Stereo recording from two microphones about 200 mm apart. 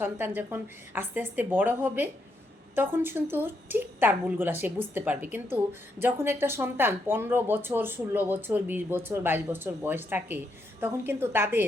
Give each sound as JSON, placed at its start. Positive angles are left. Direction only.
{"t": 0.0, "sound": "speech", "side_deg": -10}